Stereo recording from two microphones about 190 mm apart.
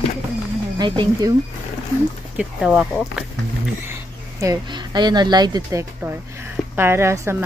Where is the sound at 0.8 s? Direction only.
20° right (ahead or behind).